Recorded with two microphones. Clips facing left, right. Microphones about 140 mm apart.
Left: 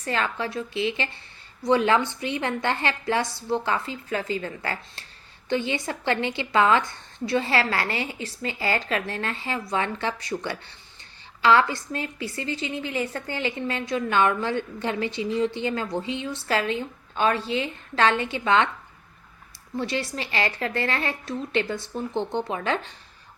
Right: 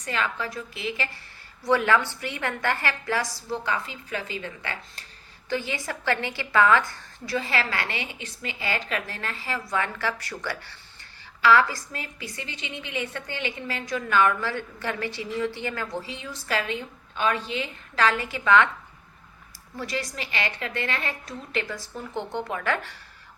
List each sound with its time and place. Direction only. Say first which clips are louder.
0.0 s a woman's voice: left 2 dB; 30° left (ahead or behind)
5.5 s a woman's voice: left 3 dB; 25° left (ahead or behind)
19.7 s a woman's voice: left 4 dB; 25° left (ahead or behind)